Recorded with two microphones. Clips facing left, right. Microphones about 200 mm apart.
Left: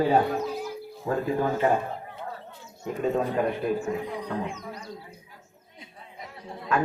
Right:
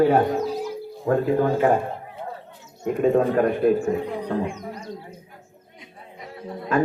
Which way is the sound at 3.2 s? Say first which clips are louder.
Right 7 dB; 55° right (ahead or behind).